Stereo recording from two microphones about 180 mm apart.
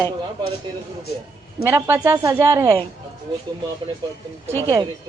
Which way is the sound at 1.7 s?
15° right (ahead or behind).